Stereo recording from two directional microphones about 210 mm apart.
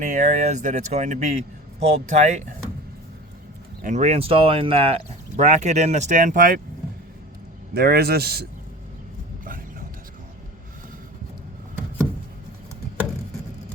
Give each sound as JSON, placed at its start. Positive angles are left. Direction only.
{"t": 0.0, "sound": "speech", "side_deg": -35}
{"t": 3.8, "sound": "speech", "side_deg": -35}
{"t": 7.7, "sound": "a man's voice", "side_deg": -50}